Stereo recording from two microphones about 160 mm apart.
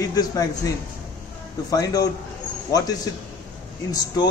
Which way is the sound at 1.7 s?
20° left (ahead or behind).